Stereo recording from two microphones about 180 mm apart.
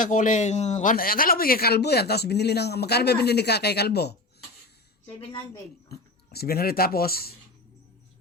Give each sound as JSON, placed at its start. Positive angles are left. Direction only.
{"t": 0.0, "sound": "speech", "side_deg": 45}
{"t": 5.9, "sound": "speech", "side_deg": 60}